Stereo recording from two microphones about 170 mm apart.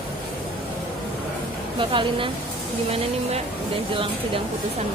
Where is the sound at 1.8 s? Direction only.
30° right (ahead or behind).